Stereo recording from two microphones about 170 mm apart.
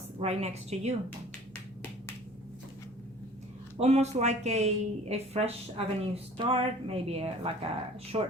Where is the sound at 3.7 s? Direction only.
40° right (ahead or behind).